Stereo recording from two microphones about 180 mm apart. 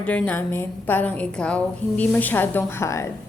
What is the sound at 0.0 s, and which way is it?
A woman's voice, 10° left (ahead or behind).